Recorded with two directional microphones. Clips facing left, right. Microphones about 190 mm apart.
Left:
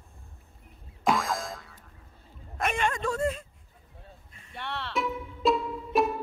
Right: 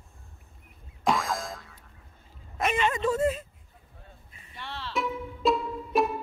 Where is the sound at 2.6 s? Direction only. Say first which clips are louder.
Right 2 dB; centre (ahead or behind).